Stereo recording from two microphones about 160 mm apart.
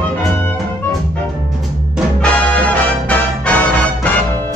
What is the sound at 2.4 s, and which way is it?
Music, 10° left (ahead or behind).